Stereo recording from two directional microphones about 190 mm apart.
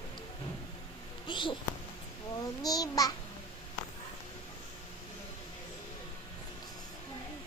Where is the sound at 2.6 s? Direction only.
20° left (ahead or behind).